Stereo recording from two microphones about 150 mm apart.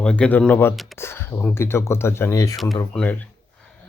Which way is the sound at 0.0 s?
5° left (ahead or behind).